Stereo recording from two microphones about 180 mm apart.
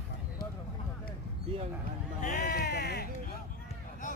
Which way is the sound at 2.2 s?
50° left (ahead or behind).